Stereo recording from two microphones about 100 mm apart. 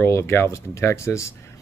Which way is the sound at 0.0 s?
25° left (ahead or behind).